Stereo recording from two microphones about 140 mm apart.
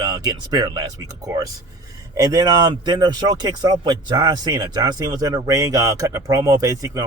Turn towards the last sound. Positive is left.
turn(degrees=-25)  # may be behind; listen again after turning